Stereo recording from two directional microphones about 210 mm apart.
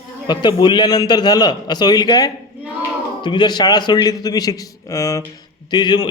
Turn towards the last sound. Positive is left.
turn(degrees=20)  # may be behind; listen again after turning